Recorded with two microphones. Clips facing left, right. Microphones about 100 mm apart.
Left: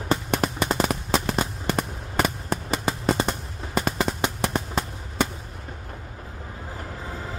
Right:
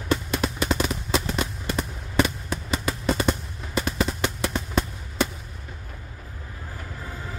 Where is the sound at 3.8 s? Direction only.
40° left (ahead or behind).